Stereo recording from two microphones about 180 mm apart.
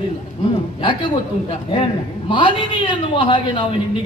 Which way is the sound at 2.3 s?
25° left (ahead or behind).